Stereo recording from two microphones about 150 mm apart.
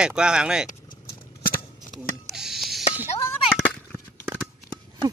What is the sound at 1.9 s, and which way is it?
Telephone dialing, centre (ahead or behind).